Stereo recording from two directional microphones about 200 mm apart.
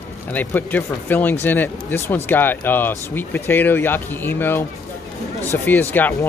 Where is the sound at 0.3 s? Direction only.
10° left (ahead or behind).